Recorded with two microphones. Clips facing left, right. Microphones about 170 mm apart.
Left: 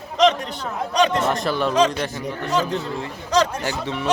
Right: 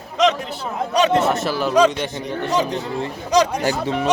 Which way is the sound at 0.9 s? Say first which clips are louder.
Right 3 dB; 5° right (ahead or behind).